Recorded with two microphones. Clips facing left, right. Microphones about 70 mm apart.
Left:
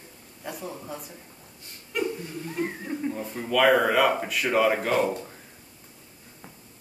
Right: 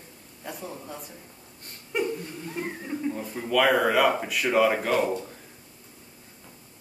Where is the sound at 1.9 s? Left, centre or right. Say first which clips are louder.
Right 1 dB; centre.